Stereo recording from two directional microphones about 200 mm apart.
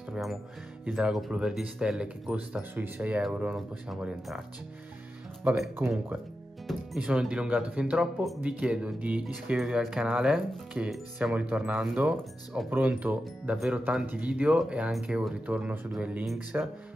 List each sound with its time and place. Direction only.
0.1 s speech: centre (ahead or behind)
5.4 s speech: 10° right (ahead or behind)